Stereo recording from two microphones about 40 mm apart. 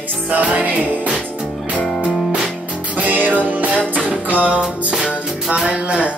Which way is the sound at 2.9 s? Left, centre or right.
Right.